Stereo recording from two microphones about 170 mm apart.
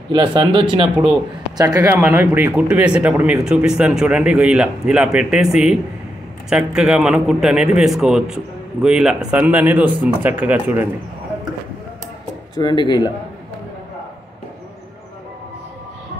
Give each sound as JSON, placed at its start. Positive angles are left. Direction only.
{"t": 0.1, "sound": "speech", "side_deg": -30}
{"t": 1.9, "sound": "a man's voice", "side_deg": -10}
{"t": 12.5, "sound": "speech", "side_deg": 25}